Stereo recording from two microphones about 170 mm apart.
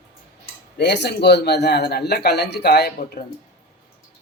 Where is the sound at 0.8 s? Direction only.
85° left.